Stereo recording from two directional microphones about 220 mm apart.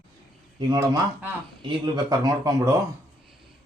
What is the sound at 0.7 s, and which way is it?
Speech, 15° right (ahead or behind).